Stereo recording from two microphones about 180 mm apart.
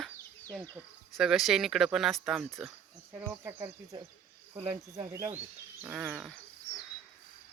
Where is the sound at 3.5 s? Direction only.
15° right (ahead or behind).